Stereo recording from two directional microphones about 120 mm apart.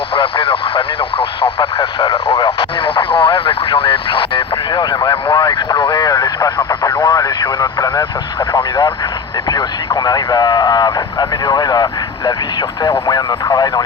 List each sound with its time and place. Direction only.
0.1 s speech: 45° left (ahead or behind); by 6.5 s 30° left (ahead or behind)
6.7 s radio: 25° left (ahead or behind)
7.6 s speech: 35° left (ahead or behind)